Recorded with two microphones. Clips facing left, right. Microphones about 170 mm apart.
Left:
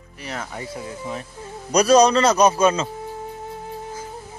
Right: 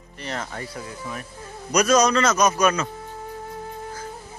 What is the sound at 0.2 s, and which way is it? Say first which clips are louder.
Speech: right 1 dB; 5° left (ahead or behind).